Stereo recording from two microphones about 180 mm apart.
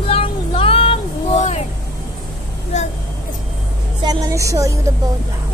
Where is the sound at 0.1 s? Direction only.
30° left (ahead or behind).